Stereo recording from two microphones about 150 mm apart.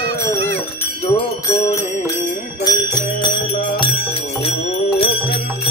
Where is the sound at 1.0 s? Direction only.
40° left (ahead or behind).